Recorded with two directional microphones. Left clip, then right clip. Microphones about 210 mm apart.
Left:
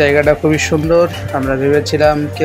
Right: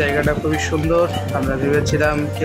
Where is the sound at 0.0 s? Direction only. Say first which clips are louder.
Left 8 dB; 20° left (ahead or behind).